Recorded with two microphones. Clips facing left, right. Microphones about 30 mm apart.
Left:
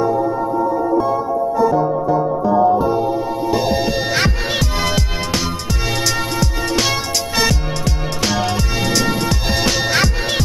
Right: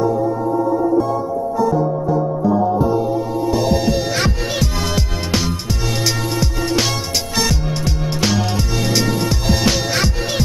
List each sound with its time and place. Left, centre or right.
0.0 s music: centre
7.8 s music: centre